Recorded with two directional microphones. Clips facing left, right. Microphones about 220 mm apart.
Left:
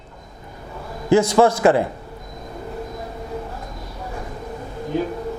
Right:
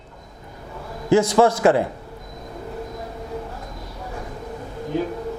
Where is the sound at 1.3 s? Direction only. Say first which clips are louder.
Left 1 dB; 25° left (ahead or behind).